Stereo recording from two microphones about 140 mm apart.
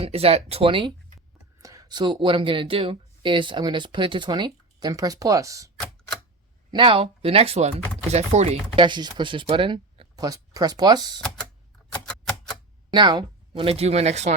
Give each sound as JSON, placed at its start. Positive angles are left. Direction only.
{"t": 0.0, "sound": "speech", "side_deg": -45}
{"t": 1.6, "sound": "speech", "side_deg": -25}
{"t": 6.7, "sound": "speech", "side_deg": -35}
{"t": 8.7, "sound": "speech", "side_deg": -35}
{"t": 11.9, "sound": "typewriter", "side_deg": 5}
{"t": 12.9, "sound": "speech", "side_deg": -30}
{"t": 13.7, "sound": "speech", "side_deg": -50}